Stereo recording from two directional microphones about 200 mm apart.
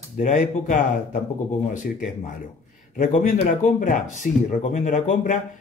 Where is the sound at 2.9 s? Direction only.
35° left (ahead or behind).